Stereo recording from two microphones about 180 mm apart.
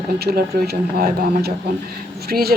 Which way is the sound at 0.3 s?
60° right (ahead or behind).